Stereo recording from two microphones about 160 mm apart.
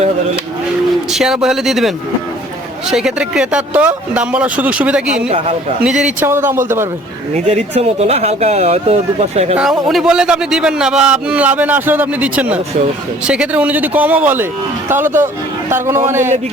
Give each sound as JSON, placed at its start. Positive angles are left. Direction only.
{"t": 1.1, "sound": "a man's voice", "side_deg": -5}
{"t": 2.9, "sound": "a man's voice", "side_deg": -5}
{"t": 6.1, "sound": "speech", "side_deg": -15}
{"t": 7.3, "sound": "speech", "side_deg": -45}
{"t": 9.6, "sound": "a man's voice", "side_deg": 0}